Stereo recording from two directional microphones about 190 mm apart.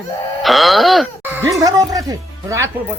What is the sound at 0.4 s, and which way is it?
Wail, centre (ahead or behind).